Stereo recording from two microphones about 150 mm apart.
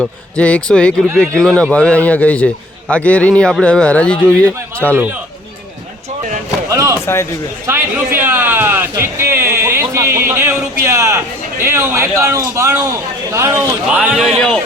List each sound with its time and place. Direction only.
0.0 s a man's voice: 5° left (ahead or behind)
6.7 s a sound: 20° right (ahead or behind)
7.0 s a man's voice: 15° left (ahead or behind)
7.7 s a man's voice: 15° right (ahead or behind)
13.8 s a man's voice: 5° right (ahead or behind)